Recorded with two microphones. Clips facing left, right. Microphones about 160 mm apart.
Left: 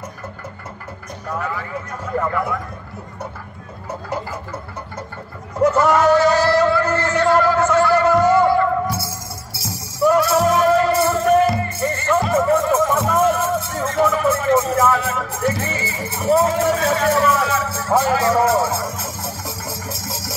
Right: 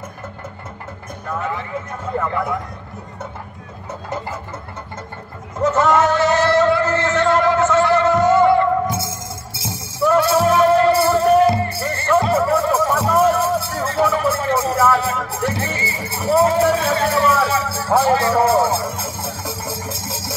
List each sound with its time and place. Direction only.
5.6 s a sound: 20° right (ahead or behind)
14.9 s music: 35° right (ahead or behind)
16.1 s speech: 30° right (ahead or behind)